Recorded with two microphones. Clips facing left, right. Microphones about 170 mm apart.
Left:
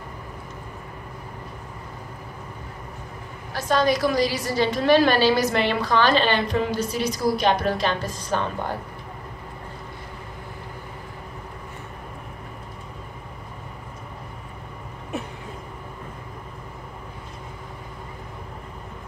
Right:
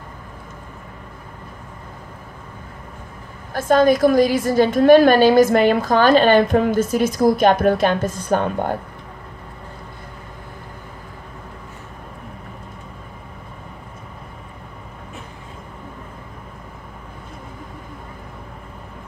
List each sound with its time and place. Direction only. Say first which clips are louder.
3.5 s a woman's voice: right 7 dB; 50° right (ahead or behind)